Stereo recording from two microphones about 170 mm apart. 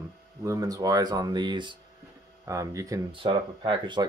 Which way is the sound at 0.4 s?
20° right (ahead or behind).